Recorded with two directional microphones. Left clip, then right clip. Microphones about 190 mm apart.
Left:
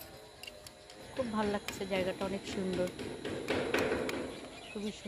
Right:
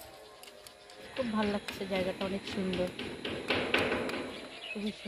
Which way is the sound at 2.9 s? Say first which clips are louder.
Right 2 dB; 50° left (ahead or behind).